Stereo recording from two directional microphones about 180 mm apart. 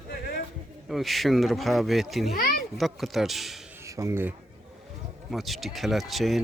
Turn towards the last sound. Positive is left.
turn(degrees=0)  # may be behind; listen again after turning